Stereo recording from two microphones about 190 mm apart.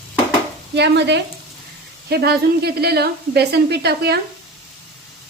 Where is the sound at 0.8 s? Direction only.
65° right (ahead or behind).